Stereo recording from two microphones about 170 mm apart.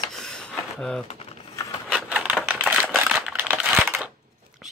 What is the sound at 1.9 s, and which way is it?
Typewriter, 5° right (ahead or behind).